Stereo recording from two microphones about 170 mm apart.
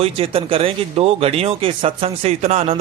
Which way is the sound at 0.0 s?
35° right (ahead or behind).